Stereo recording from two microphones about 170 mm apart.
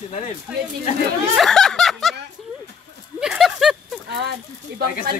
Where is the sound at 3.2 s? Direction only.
Centre (ahead or behind).